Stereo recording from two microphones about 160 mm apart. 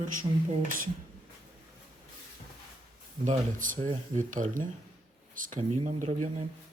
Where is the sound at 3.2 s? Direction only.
50° right (ahead or behind).